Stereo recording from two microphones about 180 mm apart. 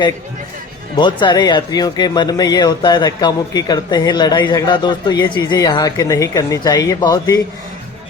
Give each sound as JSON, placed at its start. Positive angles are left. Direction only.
{"t": 0.9, "sound": "speech", "side_deg": 25}